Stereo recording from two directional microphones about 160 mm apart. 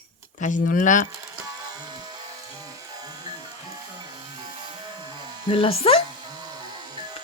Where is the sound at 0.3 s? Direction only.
55° left (ahead or behind).